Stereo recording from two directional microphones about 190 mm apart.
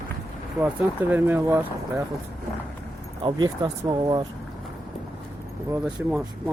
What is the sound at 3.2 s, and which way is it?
Speech, 20° right (ahead or behind).